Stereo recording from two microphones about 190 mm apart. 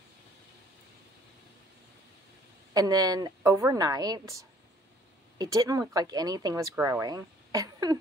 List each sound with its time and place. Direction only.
2.7 s a woman's voice: 20° right (ahead or behind)